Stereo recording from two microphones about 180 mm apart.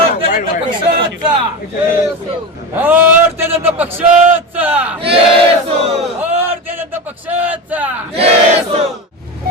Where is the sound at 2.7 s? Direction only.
10° right (ahead or behind).